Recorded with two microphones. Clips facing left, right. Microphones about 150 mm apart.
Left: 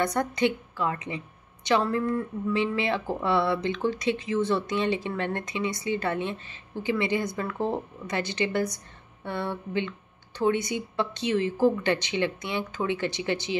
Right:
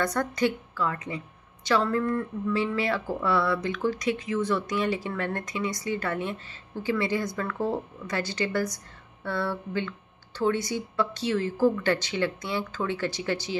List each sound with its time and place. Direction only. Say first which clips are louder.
0.0 s a woman's voice: left 1 dB; 20° left (ahead or behind)